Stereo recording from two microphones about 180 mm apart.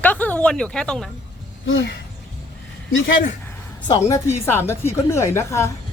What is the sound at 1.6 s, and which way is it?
Speech, 90° left.